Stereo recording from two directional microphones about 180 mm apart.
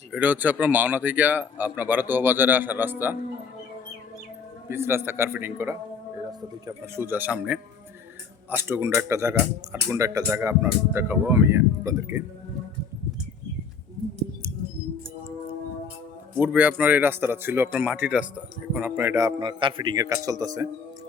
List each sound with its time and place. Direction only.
0.1 s speech: 10° right (ahead or behind)
4.7 s speech: 15° right (ahead or behind)
6.7 s speech: 15° right (ahead or behind)
16.4 s speech: 10° right (ahead or behind)
19.4 s speech: 25° right (ahead or behind)